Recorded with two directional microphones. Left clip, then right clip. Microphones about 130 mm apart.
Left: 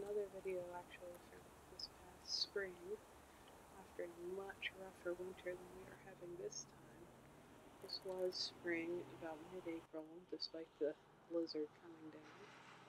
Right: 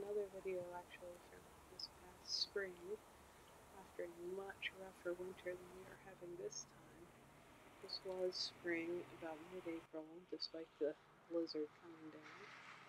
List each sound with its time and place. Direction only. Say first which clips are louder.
0.5 s a sound: even; centre (ahead or behind)
4.0 s speech: even; centre (ahead or behind)
7.8 s speech: even; centre (ahead or behind)
9.2 s speech: even; 15° right (ahead or behind)
9.9 s speech: even; centre (ahead or behind)
12.3 s a sound: right 3 dB; 20° right (ahead or behind)